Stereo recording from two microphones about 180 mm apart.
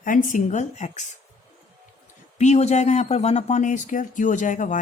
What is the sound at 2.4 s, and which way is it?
Speech, 40° left (ahead or behind).